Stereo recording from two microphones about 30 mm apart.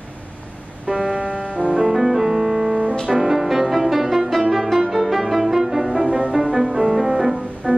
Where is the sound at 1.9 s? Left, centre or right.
Centre.